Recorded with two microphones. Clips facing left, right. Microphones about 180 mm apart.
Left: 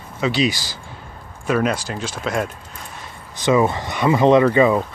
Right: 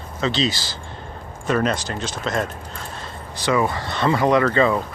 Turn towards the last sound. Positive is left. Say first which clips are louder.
# left 4 dB
turn(degrees=15)  # may be behind; listen again after turning